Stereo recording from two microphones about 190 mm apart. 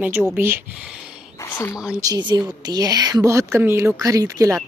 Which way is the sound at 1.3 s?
15° left (ahead or behind).